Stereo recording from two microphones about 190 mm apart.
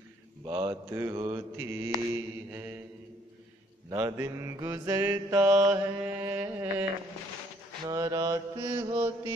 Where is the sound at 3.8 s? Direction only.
15° right (ahead or behind).